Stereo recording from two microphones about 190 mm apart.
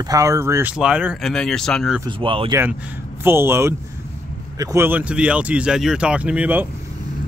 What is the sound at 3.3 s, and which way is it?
Speech, 15° right (ahead or behind).